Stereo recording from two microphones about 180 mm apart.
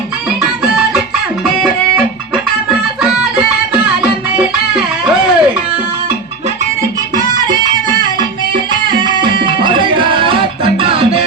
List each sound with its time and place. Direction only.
2.3 s music: centre (ahead or behind)
7.3 s music: 25° right (ahead or behind)